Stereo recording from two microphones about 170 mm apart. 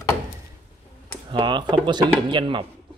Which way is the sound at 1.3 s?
25° right (ahead or behind).